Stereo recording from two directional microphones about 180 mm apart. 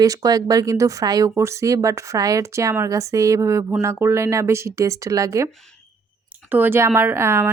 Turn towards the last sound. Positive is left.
turn(degrees=-15)  # may be behind; listen again after turning